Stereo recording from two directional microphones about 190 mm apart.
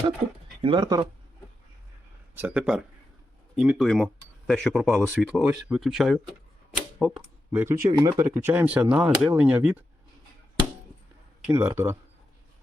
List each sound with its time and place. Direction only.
0.6 s speech: 25° right (ahead or behind)
2.3 s speech: 10° right (ahead or behind)
7.5 s speech: 15° right (ahead or behind)
11.4 s speech: 10° right (ahead or behind)